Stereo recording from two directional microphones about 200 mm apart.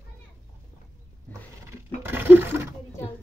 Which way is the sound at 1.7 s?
10° right (ahead or behind).